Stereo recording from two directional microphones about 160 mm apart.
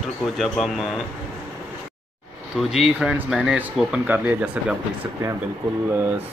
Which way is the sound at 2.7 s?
5° right (ahead or behind).